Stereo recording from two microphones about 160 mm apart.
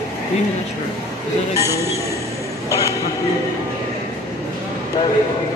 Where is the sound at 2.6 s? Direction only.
20° left (ahead or behind).